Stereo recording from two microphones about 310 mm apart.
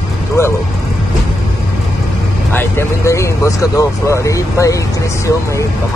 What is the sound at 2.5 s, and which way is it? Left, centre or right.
Speech, centre.